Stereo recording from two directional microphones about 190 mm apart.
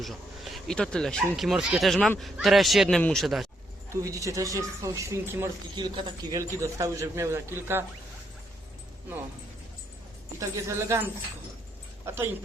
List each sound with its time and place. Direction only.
0.0 s speech: centre (ahead or behind)
4.0 s speech: 15° right (ahead or behind)
5.7 s speech: 25° right (ahead or behind)
10.4 s speech: 15° right (ahead or behind)